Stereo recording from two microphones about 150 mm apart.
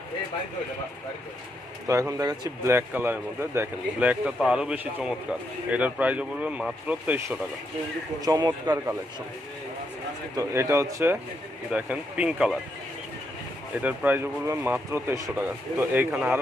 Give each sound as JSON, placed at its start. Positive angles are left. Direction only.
{"t": 1.9, "sound": "speech", "side_deg": -20}
{"t": 8.3, "sound": "a man's voice", "side_deg": -25}
{"t": 10.3, "sound": "a man's voice", "side_deg": -20}
{"t": 11.7, "sound": "speech", "side_deg": -10}
{"t": 13.7, "sound": "speech", "side_deg": -10}